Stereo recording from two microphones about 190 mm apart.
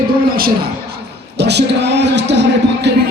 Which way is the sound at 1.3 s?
60° right (ahead or behind).